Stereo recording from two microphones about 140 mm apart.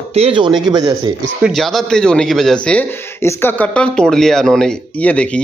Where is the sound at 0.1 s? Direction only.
40° right (ahead or behind).